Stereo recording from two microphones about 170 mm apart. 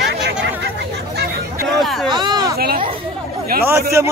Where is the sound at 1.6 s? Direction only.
Centre (ahead or behind).